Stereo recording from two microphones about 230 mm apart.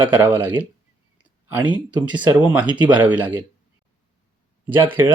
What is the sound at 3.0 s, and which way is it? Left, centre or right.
Speech, centre.